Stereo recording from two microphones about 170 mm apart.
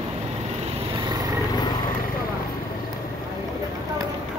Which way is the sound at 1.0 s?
25° right (ahead or behind).